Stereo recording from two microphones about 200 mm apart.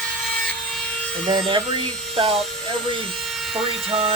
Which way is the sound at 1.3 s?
25° right (ahead or behind).